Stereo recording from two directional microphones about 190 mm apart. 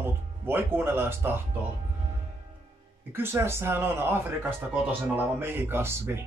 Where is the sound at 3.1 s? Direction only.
10° right (ahead or behind).